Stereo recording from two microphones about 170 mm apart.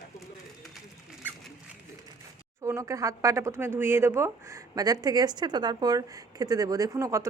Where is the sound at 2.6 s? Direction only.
20° right (ahead or behind).